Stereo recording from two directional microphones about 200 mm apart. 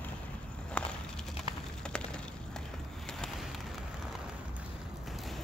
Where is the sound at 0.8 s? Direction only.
5° left (ahead or behind).